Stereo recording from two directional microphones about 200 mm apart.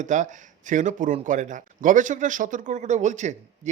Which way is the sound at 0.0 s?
40° right (ahead or behind).